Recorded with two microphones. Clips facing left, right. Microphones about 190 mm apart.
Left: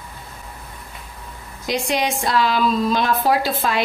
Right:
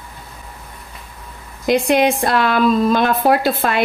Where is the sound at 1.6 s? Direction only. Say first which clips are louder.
Right 8 dB; 60° right (ahead or behind).